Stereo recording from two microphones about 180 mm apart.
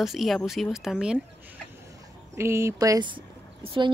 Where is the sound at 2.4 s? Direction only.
15° right (ahead or behind).